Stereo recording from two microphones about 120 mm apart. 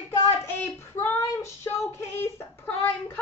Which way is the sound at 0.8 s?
20° left (ahead or behind).